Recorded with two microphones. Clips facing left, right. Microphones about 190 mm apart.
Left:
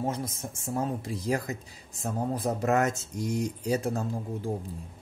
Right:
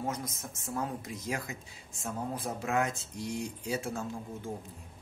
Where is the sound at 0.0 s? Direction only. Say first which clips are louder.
Left 5 dB; 30° left (ahead or behind).